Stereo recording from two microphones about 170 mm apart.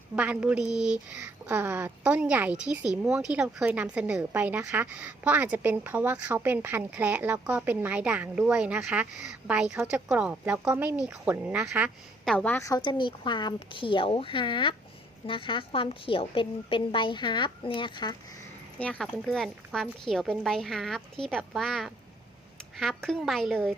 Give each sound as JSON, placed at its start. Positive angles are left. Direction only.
{"t": 0.2, "sound": "a woman's voice", "side_deg": -10}
{"t": 18.8, "sound": "a woman's voice", "side_deg": 5}